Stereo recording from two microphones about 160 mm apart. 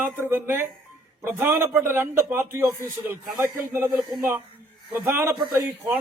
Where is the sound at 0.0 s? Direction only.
15° right (ahead or behind).